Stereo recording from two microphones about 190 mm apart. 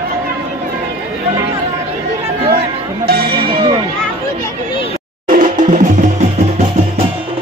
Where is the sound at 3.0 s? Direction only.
55° right (ahead or behind).